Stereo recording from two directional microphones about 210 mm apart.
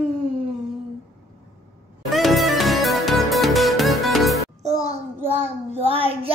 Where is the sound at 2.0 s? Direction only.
Centre (ahead or behind).